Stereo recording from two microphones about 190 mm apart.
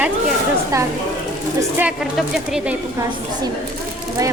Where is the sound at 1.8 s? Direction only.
5° right (ahead or behind).